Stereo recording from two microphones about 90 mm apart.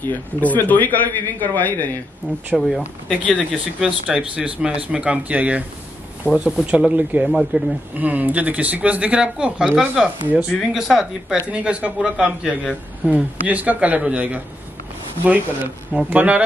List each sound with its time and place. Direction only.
0.0 s a man's voice: 20° left (ahead or behind)
2.5 s speech: centre (ahead or behind)
3.1 s speech: 15° left (ahead or behind)
3.8 s speech: 10° right (ahead or behind)